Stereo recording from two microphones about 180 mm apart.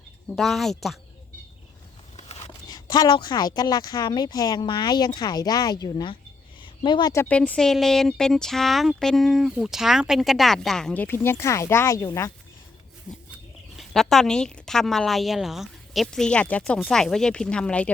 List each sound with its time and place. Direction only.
0.3 s speech: centre (ahead or behind)
2.1 s a sound: 35° left (ahead or behind)
2.6 s speech: 20° left (ahead or behind)
13.7 s speech: centre (ahead or behind)